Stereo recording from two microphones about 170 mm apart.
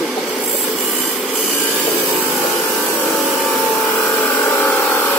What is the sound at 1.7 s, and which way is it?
Vacuum cleaner, 10° left (ahead or behind).